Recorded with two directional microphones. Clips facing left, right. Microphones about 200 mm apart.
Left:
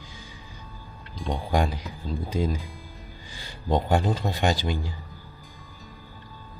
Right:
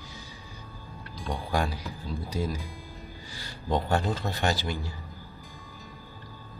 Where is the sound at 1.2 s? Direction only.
20° left (ahead or behind).